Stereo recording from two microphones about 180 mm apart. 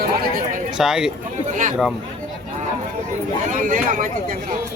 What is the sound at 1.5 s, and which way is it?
Speech, 45° right (ahead or behind).